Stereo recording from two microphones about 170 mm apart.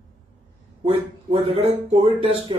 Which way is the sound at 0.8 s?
35° right (ahead or behind).